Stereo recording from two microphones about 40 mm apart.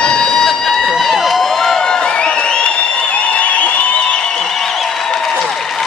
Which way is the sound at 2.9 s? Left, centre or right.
Left.